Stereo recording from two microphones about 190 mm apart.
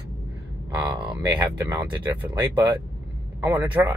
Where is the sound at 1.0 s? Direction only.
10° right (ahead or behind).